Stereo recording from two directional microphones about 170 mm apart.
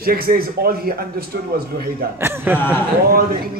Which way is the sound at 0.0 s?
60° right (ahead or behind).